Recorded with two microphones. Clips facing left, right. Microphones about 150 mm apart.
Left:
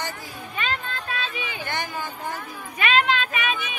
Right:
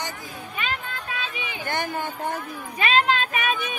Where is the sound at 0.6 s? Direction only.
10° right (ahead or behind).